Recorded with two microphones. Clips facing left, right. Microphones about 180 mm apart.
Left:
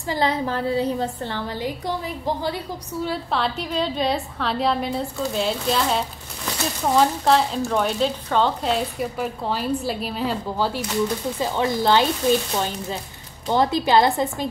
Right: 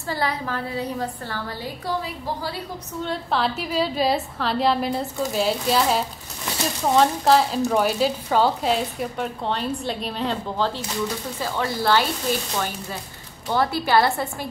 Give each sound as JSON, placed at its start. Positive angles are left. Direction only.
{"t": 0.1, "sound": "a woman's voice", "side_deg": 25}
{"t": 3.0, "sound": "a woman's voice", "side_deg": 0}